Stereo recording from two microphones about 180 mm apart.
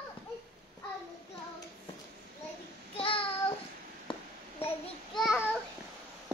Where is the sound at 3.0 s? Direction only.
30° left (ahead or behind).